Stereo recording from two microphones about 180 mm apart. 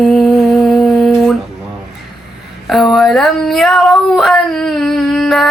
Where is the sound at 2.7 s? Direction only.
Centre (ahead or behind).